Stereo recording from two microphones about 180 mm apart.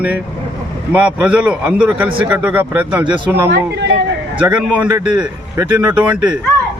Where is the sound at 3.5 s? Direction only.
70° right (ahead or behind).